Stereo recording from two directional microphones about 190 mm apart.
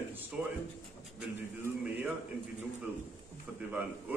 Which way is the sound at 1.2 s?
10° right (ahead or behind).